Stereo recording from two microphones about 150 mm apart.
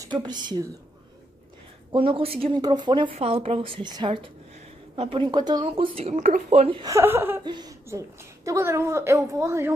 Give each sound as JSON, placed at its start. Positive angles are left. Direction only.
{"t": 0.0, "sound": "speech", "side_deg": -30}
{"t": 1.9, "sound": "speech", "side_deg": -35}
{"t": 6.8, "sound": "a woman's voice", "side_deg": -20}
{"t": 7.4, "sound": "a woman's voice", "side_deg": -25}